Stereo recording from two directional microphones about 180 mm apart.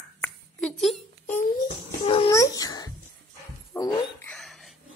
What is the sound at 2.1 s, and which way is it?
Babbling, 30° left (ahead or behind).